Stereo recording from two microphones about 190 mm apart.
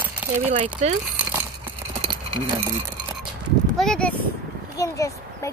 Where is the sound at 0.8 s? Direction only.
35° right (ahead or behind).